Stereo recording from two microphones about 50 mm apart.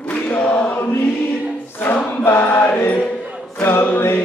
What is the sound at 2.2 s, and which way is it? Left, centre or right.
Chant, left.